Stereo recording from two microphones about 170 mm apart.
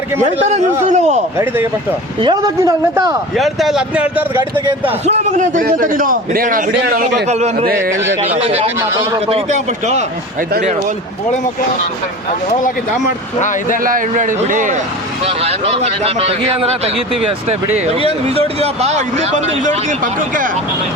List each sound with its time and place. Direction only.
0.2 s a man's voice: 45° right (ahead or behind)
2.2 s a man's voice: 20° right (ahead or behind)
3.3 s speech: centre (ahead or behind)
5.0 s a man's voice: 45° right (ahead or behind)
7.0 s a man's voice: 45° right (ahead or behind)
13.8 s a man's voice: 55° right (ahead or behind)
15.2 s speech: 35° right (ahead or behind)
17.7 s speech: 35° right (ahead or behind)